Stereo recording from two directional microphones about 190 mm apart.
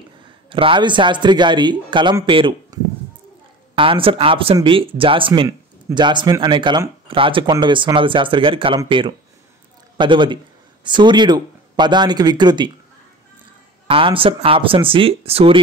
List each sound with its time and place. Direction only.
0.5 s speech: 25° right (ahead or behind)
13.8 s speech: 30° right (ahead or behind)